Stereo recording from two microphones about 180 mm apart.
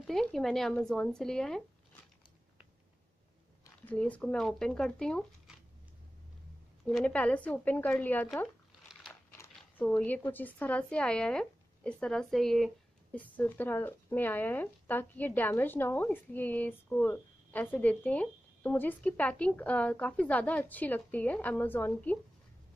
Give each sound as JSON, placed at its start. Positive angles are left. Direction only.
{"t": 0.0, "sound": "speech", "side_deg": 0}
{"t": 3.8, "sound": "speech", "side_deg": 5}
{"t": 6.9, "sound": "speech", "side_deg": 5}
{"t": 9.4, "sound": "speech", "side_deg": 10}